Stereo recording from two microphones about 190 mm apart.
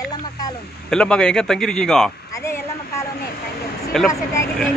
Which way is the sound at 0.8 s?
5° left (ahead or behind).